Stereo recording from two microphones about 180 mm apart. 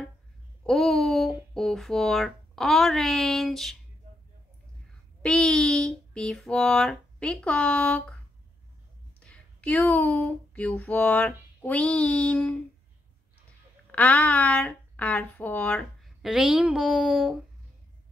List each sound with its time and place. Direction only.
0.7 s speech: centre (ahead or behind)
5.2 s speech: 5° left (ahead or behind)
9.2 s speech: 5° left (ahead or behind)
13.9 s a woman's voice: 10° left (ahead or behind)